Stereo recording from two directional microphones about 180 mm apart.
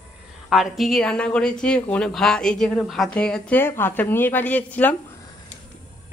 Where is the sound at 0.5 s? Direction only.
Centre (ahead or behind).